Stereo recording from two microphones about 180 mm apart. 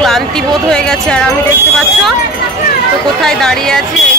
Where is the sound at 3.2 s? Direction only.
5° left (ahead or behind).